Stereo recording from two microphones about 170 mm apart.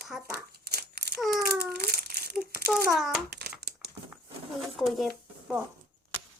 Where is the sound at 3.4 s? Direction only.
70° right (ahead or behind).